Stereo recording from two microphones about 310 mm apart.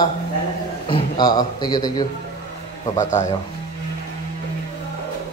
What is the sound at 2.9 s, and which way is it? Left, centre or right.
Speech, left.